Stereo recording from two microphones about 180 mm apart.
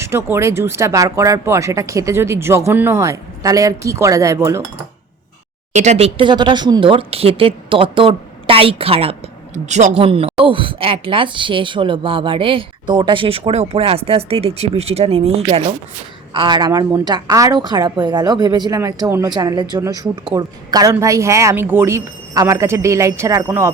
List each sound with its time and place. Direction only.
0.0 s speech: 15° right (ahead or behind)
5.7 s a woman's voice: 40° right (ahead or behind); by 23.7 s 15° right (ahead or behind)